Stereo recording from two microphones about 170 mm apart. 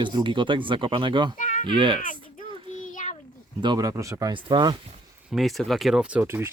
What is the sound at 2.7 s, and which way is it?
Child singing, 50° left (ahead or behind).